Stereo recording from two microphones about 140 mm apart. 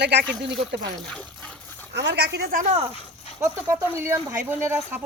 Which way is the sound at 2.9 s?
45° left (ahead or behind).